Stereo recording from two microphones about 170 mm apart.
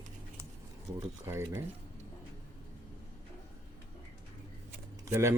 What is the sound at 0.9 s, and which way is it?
Speech, 15° right (ahead or behind).